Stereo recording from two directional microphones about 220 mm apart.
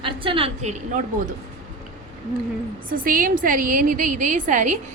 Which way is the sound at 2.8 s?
40° right (ahead or behind).